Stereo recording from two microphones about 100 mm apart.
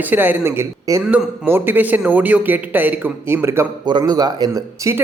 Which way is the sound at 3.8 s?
45° right (ahead or behind).